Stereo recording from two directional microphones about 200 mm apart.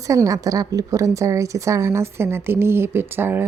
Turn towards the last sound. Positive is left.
turn(degrees=-10)  # may be behind; listen again after turning